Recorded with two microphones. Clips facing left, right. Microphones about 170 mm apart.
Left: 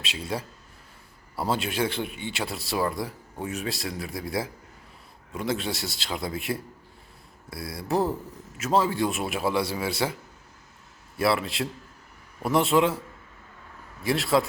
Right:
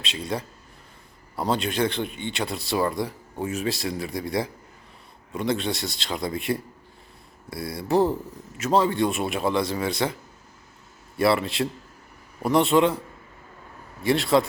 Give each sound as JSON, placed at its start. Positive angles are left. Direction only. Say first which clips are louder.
{"t": 0.0, "sound": "speech", "louder": "right 2 dB", "side_deg": 5}
{"t": 11.2, "sound": "speech", "louder": "right 3 dB", "side_deg": 0}
{"t": 14.0, "sound": "speech", "louder": "right 3 dB", "side_deg": 0}